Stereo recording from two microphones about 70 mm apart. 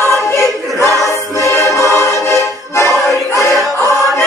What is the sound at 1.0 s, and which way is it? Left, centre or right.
Music, left.